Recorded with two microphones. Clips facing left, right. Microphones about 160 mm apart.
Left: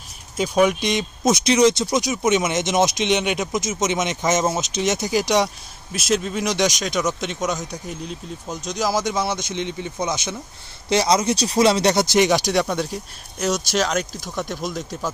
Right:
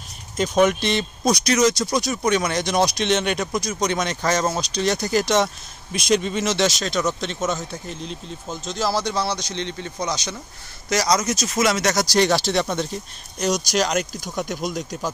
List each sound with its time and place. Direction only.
0.4 s speech: 10° left (ahead or behind)
1.3 s speech: 25° left (ahead or behind)
1.9 s speech: 15° left (ahead or behind)
6.4 s speech: 15° left (ahead or behind)
7.7 s speech: 5° left (ahead or behind)
8.7 s speech: 15° left (ahead or behind)
9.9 s speech: 25° left (ahead or behind); by 15.0 s centre (ahead or behind)